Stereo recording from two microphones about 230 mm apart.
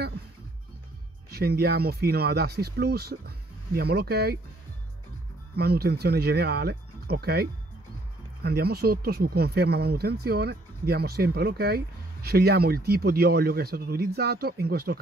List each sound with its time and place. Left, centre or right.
1.3 s speech: right
5.6 s speech: right